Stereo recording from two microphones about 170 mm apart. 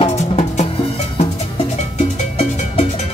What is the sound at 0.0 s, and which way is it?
Music, 40° left (ahead or behind).